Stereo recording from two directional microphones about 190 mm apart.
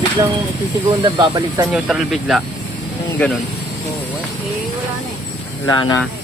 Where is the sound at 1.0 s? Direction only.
20° right (ahead or behind).